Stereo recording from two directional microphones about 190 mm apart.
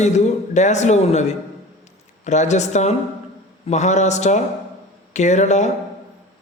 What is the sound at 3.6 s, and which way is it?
A man's voice, 40° left (ahead or behind).